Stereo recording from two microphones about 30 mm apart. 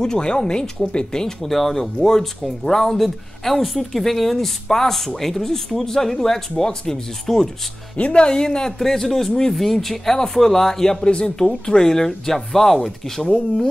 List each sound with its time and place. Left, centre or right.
0.0 s speech: left
1.4 s speech: centre
7.3 s speech: centre
8.1 s speech: left; by 11.0 s centre
11.0 s speech: left; by 13.3 s centre